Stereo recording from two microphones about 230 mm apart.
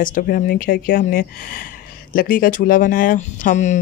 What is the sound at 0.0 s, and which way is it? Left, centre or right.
Speech, left.